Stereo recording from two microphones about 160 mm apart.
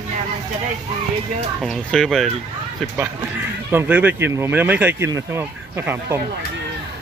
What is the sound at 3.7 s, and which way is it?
Speech, 10° right (ahead or behind).